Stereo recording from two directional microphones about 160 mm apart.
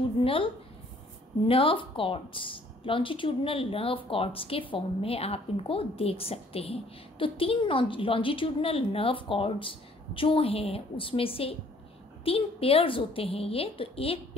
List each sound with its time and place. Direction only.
0.2 s a woman's voice: 35° left (ahead or behind)